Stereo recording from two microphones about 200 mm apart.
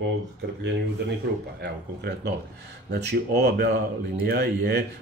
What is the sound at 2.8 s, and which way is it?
Speech, 55° right (ahead or behind).